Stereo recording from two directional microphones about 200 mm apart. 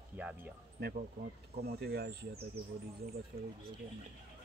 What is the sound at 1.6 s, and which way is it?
Speech, 50° right (ahead or behind).